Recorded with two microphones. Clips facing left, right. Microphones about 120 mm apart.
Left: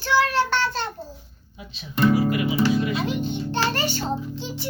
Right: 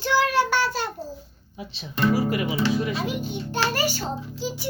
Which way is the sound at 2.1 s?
35° right (ahead or behind).